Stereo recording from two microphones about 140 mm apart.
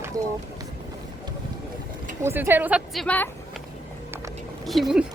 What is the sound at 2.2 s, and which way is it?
Speech, 15° right (ahead or behind).